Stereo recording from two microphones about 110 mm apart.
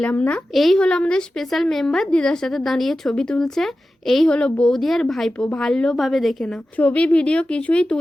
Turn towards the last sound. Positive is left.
turn(degrees=10)  # may be behind; listen again after turning